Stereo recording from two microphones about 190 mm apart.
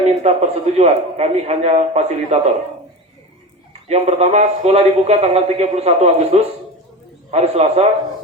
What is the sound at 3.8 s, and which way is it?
A man's voice, 35° right (ahead or behind).